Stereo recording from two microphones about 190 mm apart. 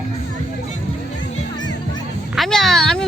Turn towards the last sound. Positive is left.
turn(degrees=5)  # may be behind; listen again after turning